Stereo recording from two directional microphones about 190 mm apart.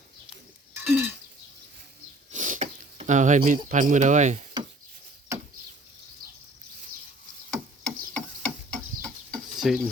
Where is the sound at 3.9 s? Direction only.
40° right (ahead or behind).